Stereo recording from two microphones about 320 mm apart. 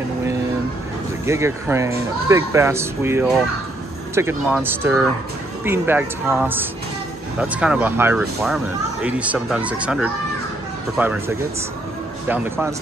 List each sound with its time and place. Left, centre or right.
1.2 s speech: centre